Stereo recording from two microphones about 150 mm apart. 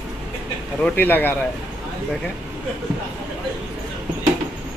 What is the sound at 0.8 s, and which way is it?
Speech, 10° left (ahead or behind).